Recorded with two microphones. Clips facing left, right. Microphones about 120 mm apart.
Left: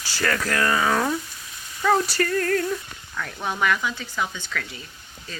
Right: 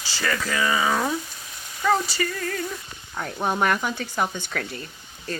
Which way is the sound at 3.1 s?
35° right (ahead or behind).